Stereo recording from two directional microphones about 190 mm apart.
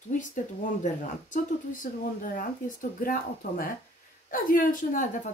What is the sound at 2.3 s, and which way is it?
A woman's voice, 45° left (ahead or behind).